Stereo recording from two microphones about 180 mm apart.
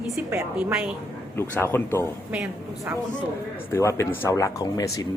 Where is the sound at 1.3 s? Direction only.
10° left (ahead or behind).